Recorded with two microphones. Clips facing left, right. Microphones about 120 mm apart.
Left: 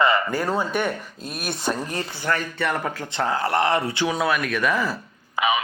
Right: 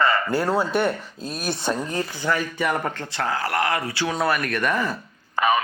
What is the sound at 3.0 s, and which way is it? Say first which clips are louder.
Speech: left 2 dB; 20° left (ahead or behind).